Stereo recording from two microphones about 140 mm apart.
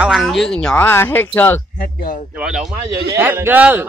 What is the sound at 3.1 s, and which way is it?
Speech, 15° right (ahead or behind).